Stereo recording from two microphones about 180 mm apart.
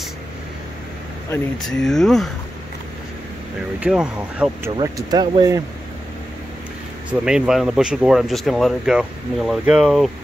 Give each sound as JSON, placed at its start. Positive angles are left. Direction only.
{"t": 1.6, "sound": "speech", "side_deg": 0}
{"t": 3.8, "sound": "speech", "side_deg": -5}
{"t": 4.7, "sound": "speech", "side_deg": -20}
{"t": 7.1, "sound": "speech", "side_deg": -5}